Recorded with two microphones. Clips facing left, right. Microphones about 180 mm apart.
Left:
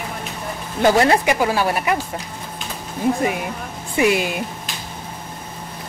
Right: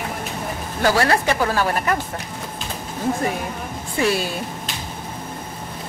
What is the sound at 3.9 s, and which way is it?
Speech, 15° left (ahead or behind).